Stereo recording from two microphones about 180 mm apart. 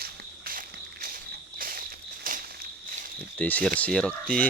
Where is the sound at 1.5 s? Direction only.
50° right (ahead or behind).